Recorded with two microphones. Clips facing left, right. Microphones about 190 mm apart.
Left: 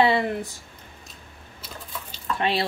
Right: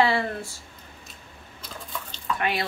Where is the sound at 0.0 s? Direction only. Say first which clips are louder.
Left 2 dB; 20° left (ahead or behind).